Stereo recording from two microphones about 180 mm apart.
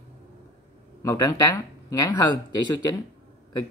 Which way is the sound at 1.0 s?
20° left (ahead or behind).